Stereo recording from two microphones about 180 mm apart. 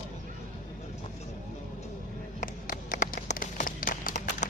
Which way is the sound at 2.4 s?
45° left (ahead or behind).